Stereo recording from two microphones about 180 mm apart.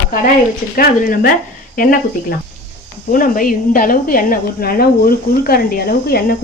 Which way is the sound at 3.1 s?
50° left (ahead or behind).